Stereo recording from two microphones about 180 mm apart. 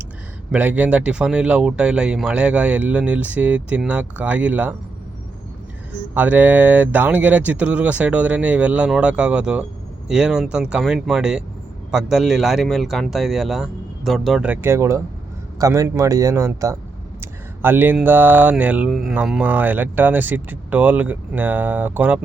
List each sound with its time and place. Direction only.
0.5 s speech: 10° right (ahead or behind)
6.1 s speech: 10° right (ahead or behind)